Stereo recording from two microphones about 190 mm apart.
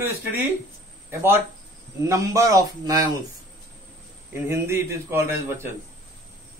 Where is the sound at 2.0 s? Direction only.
15° right (ahead or behind).